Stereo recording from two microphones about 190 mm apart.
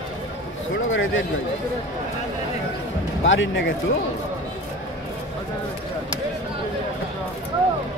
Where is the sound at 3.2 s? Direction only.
80° left.